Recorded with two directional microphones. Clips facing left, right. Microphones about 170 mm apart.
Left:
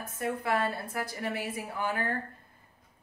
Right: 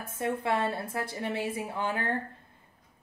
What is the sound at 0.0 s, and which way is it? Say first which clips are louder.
A woman's voice: right 2 dB; 25° right (ahead or behind).